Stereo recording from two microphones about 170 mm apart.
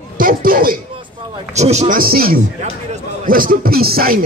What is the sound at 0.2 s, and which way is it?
Chatter, 55° right (ahead or behind).